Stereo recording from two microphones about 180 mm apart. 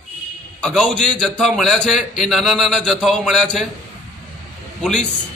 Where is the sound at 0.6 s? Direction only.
5° left (ahead or behind).